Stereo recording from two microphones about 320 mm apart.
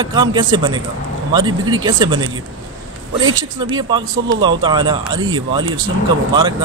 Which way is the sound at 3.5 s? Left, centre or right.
Centre.